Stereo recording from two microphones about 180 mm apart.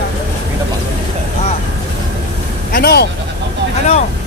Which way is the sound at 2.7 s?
60° left (ahead or behind).